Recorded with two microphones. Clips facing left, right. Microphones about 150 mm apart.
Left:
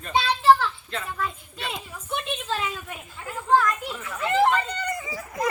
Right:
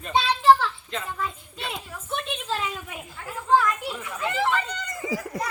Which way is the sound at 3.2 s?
5° right (ahead or behind).